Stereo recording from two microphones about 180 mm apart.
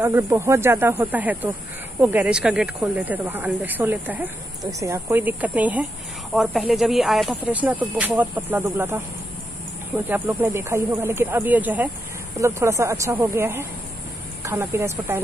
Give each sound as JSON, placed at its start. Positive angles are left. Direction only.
{"t": 0.0, "sound": "speech", "side_deg": -15}
{"t": 10.0, "sound": "speech", "side_deg": -10}